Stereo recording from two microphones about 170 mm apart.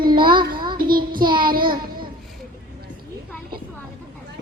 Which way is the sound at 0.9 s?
60° right (ahead or behind).